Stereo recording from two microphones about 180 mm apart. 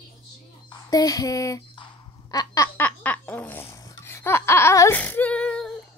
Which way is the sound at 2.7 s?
10° left (ahead or behind).